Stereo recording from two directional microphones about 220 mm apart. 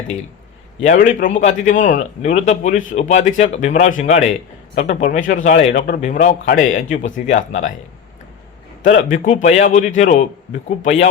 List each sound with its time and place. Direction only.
0.8 s a man's voice: 35° left (ahead or behind)
8.8 s a man's voice: 35° left (ahead or behind)